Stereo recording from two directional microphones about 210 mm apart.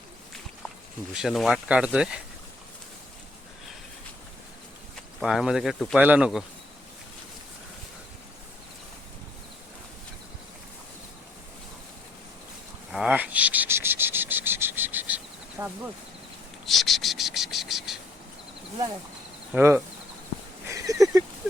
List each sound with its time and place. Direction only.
1.1 s speech: centre (ahead or behind)
5.2 s speech: centre (ahead or behind)
12.9 s cricket: 5° right (ahead or behind)
16.6 s a sound: centre (ahead or behind)
19.5 s speech: 10° right (ahead or behind)
20.7 s a sound: 15° right (ahead or behind)